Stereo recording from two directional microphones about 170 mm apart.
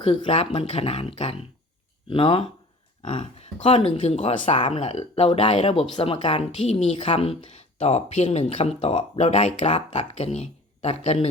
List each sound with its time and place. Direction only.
0.0 s a woman's voice: 35° left (ahead or behind)